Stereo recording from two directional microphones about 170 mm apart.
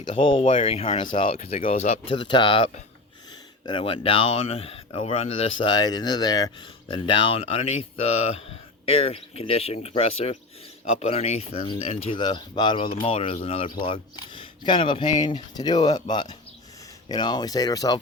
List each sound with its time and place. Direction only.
0.1 s speech: 30° left (ahead or behind)